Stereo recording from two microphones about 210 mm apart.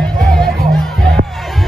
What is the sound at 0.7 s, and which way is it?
Music, centre (ahead or behind).